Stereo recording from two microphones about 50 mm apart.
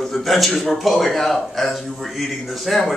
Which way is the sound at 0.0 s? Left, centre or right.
Centre.